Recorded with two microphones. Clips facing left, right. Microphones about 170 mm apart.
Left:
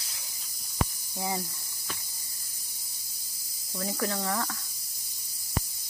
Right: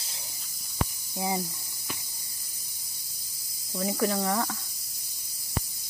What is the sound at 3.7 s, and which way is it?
Speech, 15° right (ahead or behind).